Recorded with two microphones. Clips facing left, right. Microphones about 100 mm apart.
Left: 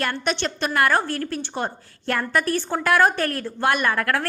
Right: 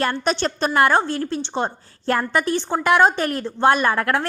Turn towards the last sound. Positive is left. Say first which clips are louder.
# right 2 dB
turn(degrees=-25)  # may be behind; listen again after turning